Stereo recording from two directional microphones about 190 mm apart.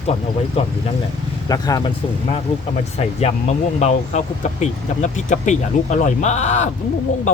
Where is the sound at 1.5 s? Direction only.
20° left (ahead or behind).